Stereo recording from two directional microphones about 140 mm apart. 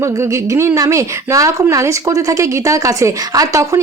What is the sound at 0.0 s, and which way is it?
Speech, 20° right (ahead or behind).